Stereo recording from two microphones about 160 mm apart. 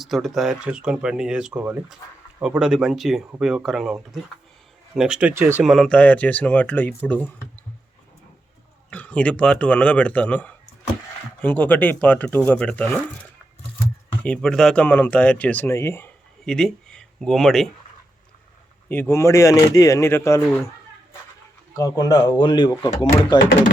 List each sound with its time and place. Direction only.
0.0 s speech: centre (ahead or behind)
4.9 s speech: 5° right (ahead or behind)
5.6 s speech: centre (ahead or behind)
8.9 s speech: 10° left (ahead or behind)
14.3 s speech: 5° left (ahead or behind)
16.5 s speech: 5° left (ahead or behind)
18.9 s speech: 15° left (ahead or behind)
21.8 s speech: 25° left (ahead or behind)